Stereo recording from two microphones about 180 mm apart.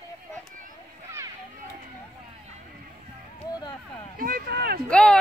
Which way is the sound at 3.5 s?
25° left (ahead or behind).